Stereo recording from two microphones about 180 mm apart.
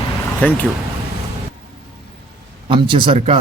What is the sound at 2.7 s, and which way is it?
Speech, 30° right (ahead or behind).